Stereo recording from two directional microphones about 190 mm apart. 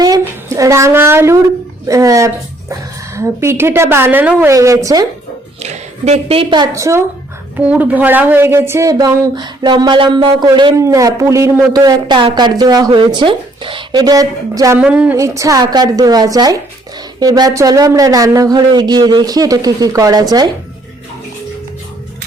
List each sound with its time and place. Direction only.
0.0 s a sound: 15° right (ahead or behind)
1.9 s a woman's voice: 15° right (ahead or behind)
5.5 s a woman's voice: 35° right (ahead or behind); by 14.8 s 20° right (ahead or behind)
14.8 s a woman's voice: 5° right (ahead or behind)